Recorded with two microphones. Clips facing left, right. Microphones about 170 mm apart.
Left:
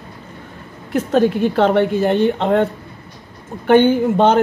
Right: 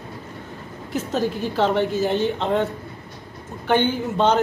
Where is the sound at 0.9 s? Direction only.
60° left (ahead or behind).